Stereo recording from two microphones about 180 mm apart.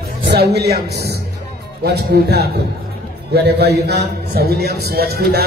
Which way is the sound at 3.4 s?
65° right (ahead or behind).